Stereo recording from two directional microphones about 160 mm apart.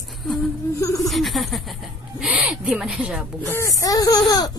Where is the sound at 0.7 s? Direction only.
20° left (ahead or behind).